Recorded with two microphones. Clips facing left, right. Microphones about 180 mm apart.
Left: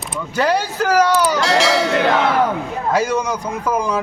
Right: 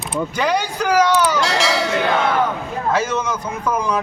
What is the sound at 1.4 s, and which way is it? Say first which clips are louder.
Speech: left 3 dB; centre (ahead or behind).